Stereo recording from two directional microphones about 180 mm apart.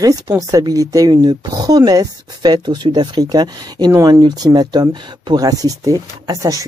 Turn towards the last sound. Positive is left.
turn(degrees=-20)  # may be behind; listen again after turning